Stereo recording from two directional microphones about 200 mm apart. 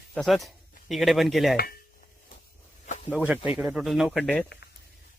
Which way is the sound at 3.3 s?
5° right (ahead or behind).